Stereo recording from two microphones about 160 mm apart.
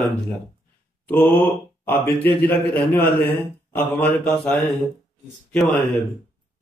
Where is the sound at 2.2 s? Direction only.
10° left (ahead or behind).